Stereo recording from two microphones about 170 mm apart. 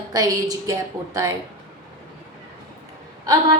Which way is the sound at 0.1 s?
20° right (ahead or behind).